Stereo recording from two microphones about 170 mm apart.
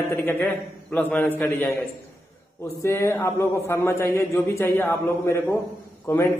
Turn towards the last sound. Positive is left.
turn(degrees=15)  # may be behind; listen again after turning